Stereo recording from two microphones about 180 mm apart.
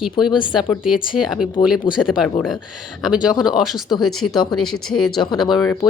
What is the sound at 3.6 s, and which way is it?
Speech, centre (ahead or behind).